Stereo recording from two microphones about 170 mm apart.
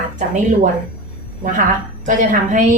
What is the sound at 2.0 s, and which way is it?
Speech, 50° right (ahead or behind).